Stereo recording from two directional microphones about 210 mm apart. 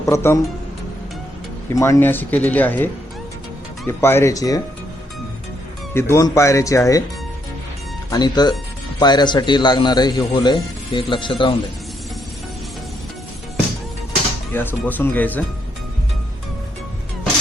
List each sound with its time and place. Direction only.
0.0 s speech: 15° left (ahead or behind)
1.7 s speech: 15° left (ahead or behind)
5.9 s speech: 10° left (ahead or behind)
8.1 s speech: 20° left (ahead or behind)
14.5 s speech: 10° left (ahead or behind)